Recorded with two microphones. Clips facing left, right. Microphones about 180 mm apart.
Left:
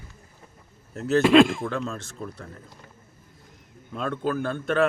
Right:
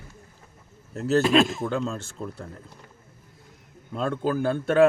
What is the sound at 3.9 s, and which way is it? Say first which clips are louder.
Speech: right 2 dB; 35° right (ahead or behind).